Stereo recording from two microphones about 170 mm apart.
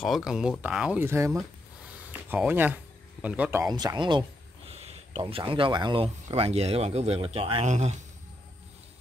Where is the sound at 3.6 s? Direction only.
25° right (ahead or behind).